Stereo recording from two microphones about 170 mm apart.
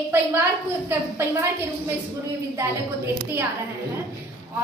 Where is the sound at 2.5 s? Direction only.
15° right (ahead or behind).